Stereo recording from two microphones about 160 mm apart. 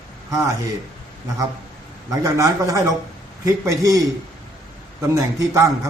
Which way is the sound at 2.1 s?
20° right (ahead or behind).